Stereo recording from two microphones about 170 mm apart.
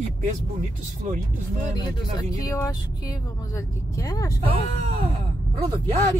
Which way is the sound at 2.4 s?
20° left (ahead or behind).